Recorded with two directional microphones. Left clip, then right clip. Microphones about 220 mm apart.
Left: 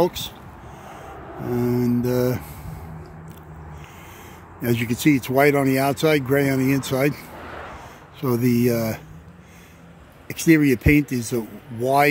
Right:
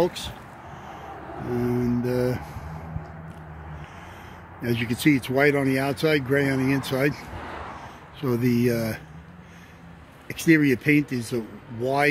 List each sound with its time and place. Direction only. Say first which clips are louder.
0.0 s speech: left 3 dB; 15° left (ahead or behind)
1.5 s speech: left 3 dB; 15° left (ahead or behind)
4.6 s speech: left 3 dB; 20° left (ahead or behind)
7.4 s a sound: left 1 dB; 50° right (ahead or behind)
8.2 s speech: left 3 dB; 10° left (ahead or behind)
10.2 s speech: left 2 dB; 15° left (ahead or behind)